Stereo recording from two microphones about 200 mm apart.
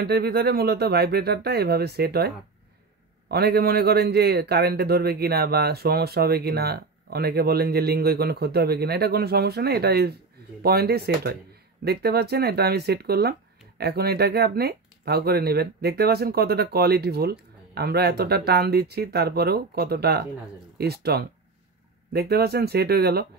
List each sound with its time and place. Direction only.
0.0 s speech: 55° right (ahead or behind)